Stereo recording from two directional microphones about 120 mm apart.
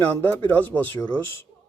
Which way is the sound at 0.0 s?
15° left (ahead or behind).